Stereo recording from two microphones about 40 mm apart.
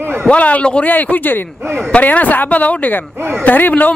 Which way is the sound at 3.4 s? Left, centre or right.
Left.